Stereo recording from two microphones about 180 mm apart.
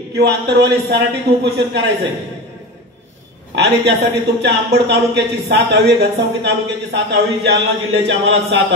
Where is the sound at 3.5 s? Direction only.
70° right (ahead or behind).